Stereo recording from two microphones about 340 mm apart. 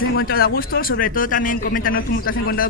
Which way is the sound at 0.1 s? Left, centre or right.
Left.